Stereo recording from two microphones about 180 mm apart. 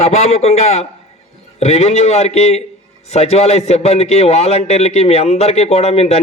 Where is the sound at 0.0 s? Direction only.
35° left (ahead or behind).